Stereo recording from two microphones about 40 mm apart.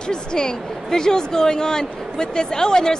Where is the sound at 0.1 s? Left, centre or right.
Centre.